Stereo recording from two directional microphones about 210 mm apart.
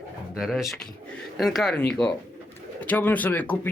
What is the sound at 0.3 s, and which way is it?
Speech, centre (ahead or behind).